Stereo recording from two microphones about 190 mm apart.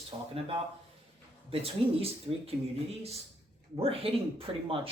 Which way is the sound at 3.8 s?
30° right (ahead or behind).